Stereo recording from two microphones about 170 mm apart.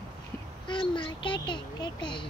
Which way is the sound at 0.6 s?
30° left (ahead or behind).